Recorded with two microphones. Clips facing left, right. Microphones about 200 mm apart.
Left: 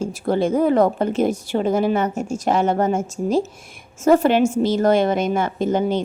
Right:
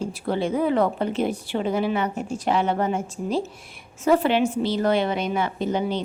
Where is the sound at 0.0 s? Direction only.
45° left (ahead or behind).